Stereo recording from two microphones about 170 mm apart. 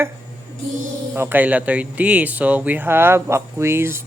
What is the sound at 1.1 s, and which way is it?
Speech, 10° right (ahead or behind).